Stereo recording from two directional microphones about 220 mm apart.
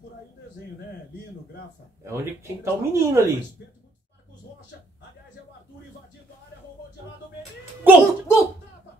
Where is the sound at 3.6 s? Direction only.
50° left (ahead or behind).